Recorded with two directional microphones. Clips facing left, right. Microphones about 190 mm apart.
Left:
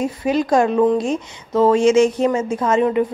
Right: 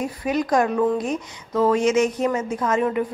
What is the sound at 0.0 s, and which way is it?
A woman's voice, 25° left (ahead or behind).